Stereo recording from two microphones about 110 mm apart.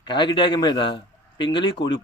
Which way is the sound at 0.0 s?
40° left (ahead or behind).